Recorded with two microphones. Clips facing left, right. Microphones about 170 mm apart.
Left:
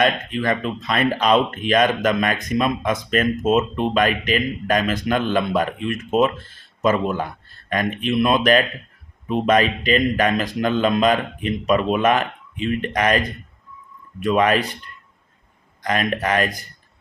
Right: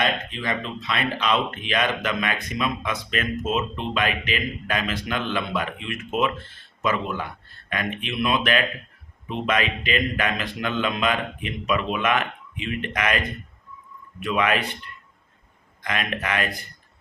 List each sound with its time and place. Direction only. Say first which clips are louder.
0.0 s a man's voice: left 6 dB; 50° left (ahead or behind)
15.8 s a man's voice: left 6 dB; 40° left (ahead or behind)